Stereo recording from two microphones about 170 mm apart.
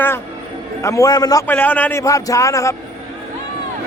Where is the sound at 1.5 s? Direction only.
10° left (ahead or behind).